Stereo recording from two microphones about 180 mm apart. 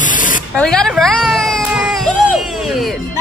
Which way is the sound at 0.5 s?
5° left (ahead or behind).